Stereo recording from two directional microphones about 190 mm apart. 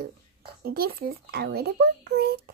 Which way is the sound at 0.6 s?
55° right (ahead or behind).